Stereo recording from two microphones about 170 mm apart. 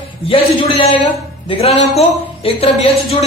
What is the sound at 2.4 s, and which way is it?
Speech, 35° left (ahead or behind).